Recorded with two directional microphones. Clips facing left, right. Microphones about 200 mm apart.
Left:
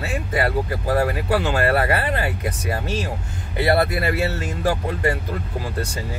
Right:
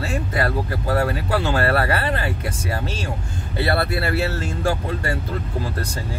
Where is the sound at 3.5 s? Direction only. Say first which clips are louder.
Left 3 dB; 15° left (ahead or behind).